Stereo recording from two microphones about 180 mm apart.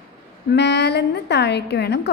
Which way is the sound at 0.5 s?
70° left (ahead or behind).